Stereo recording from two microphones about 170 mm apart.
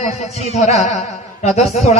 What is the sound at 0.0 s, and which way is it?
A man's voice, 40° left (ahead or behind).